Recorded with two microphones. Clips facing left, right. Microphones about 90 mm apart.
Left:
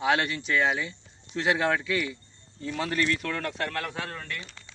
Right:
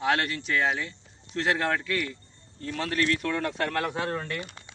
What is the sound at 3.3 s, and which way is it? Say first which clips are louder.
Speech: right 3 dB; 15° right (ahead or behind).